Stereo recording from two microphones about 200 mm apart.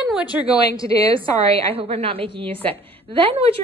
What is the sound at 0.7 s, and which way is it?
Speech, 20° left (ahead or behind).